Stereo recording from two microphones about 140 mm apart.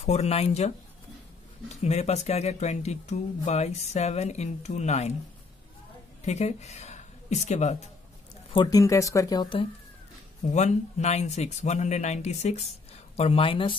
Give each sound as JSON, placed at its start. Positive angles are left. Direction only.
{"t": 0.0, "sound": "speech", "side_deg": 50}
{"t": 1.8, "sound": "speech", "side_deg": 50}
{"t": 6.2, "sound": "speech", "side_deg": 55}
{"t": 8.6, "sound": "speech", "side_deg": 25}
{"t": 10.5, "sound": "speech", "side_deg": 55}